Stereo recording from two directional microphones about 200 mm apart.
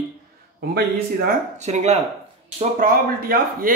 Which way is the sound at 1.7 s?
35° right (ahead or behind).